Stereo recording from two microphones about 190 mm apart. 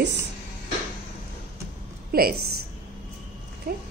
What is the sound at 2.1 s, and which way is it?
Speech, 50° right (ahead or behind).